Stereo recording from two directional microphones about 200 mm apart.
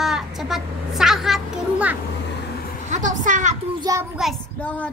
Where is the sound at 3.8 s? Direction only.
15° right (ahead or behind).